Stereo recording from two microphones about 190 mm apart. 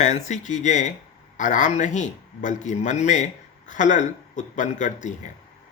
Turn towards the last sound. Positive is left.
turn(degrees=40)  # may be behind; listen again after turning